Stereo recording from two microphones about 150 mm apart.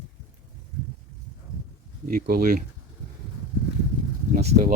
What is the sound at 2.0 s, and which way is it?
Speech, 75° right (ahead or behind).